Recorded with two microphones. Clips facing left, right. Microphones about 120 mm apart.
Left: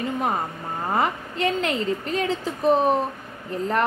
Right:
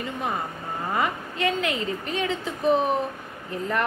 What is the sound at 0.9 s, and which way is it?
A woman's voice, 35° left (ahead or behind).